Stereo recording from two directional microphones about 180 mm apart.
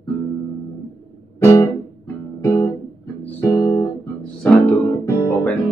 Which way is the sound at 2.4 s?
15° left (ahead or behind).